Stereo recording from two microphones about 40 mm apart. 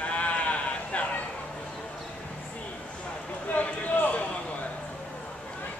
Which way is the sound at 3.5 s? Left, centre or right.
Left.